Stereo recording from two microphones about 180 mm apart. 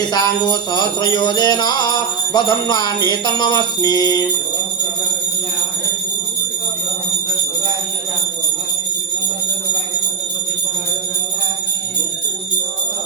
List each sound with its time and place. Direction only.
0.0 s music: 20° left (ahead or behind)